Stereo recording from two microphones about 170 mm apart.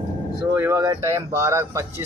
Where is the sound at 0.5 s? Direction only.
15° right (ahead or behind).